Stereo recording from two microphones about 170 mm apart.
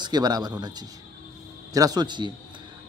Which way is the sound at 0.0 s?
25° right (ahead or behind).